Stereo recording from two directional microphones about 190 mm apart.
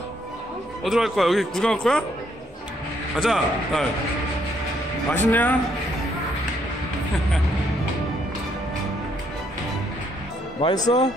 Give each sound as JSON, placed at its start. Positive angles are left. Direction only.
{"t": 0.8, "sound": "speech", "side_deg": 0}
{"t": 3.2, "sound": "speech", "side_deg": 0}
{"t": 5.1, "sound": "speech", "side_deg": 10}
{"t": 10.6, "sound": "speech", "side_deg": 20}